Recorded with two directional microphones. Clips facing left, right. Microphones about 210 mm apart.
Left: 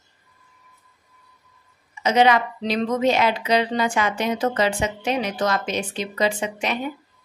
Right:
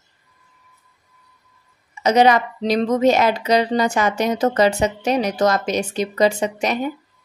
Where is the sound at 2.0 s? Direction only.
40° right (ahead or behind).